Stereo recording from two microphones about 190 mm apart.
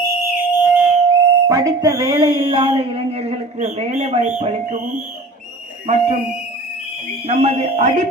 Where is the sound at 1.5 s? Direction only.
20° right (ahead or behind).